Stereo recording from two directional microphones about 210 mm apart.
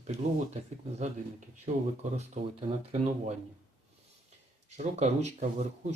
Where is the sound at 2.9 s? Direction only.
30° right (ahead or behind).